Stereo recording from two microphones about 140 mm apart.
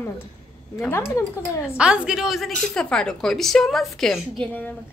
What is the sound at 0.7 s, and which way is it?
Speech, 15° left (ahead or behind).